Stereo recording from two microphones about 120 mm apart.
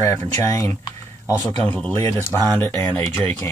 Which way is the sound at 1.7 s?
15° left (ahead or behind).